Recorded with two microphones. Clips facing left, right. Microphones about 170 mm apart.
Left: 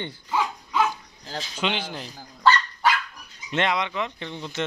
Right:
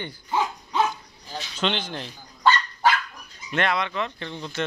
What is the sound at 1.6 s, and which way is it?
Speech, 10° left (ahead or behind).